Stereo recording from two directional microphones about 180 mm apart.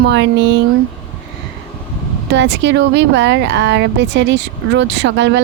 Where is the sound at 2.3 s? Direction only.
80° right.